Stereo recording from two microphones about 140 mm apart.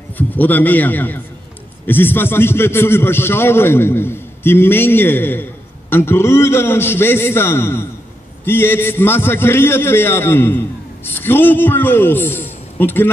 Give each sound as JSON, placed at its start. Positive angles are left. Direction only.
{"t": 0.4, "sound": "a man's voice", "side_deg": 10}